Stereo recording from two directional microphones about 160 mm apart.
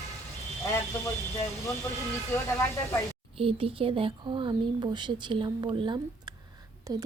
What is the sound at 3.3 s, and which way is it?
A woman's voice, 35° right (ahead or behind).